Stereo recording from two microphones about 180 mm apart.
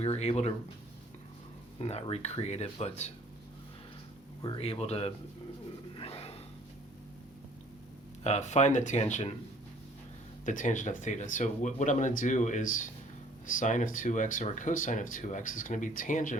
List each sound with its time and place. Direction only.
0.0 s speech: 35° left (ahead or behind)
1.8 s speech: 35° left (ahead or behind)
4.4 s speech: 30° left (ahead or behind)
6.0 s a sound: 35° left (ahead or behind)
8.2 s speech: 40° left (ahead or behind)
10.4 s speech: 45° left (ahead or behind)